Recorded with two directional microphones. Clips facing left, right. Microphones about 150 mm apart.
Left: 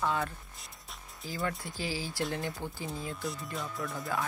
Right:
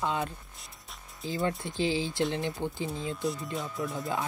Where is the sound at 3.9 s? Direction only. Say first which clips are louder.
Right 1 dB; 20° right (ahead or behind).